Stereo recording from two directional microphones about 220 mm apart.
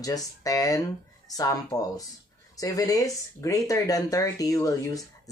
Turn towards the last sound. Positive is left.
turn(degrees=15)  # may be behind; listen again after turning